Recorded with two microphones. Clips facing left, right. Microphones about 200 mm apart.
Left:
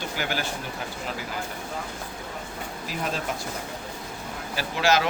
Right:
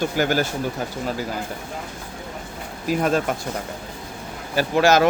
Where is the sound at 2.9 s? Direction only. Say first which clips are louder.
Right 13 dB; 50° right (ahead or behind).